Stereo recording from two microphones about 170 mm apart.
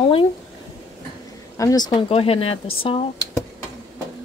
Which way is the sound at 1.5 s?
20° left (ahead or behind).